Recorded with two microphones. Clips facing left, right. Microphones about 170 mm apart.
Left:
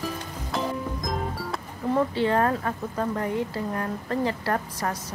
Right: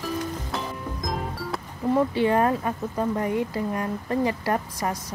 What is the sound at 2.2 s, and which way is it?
Speech, 15° right (ahead or behind).